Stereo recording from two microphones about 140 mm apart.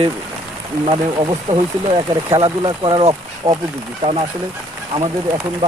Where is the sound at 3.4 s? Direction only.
55° right (ahead or behind).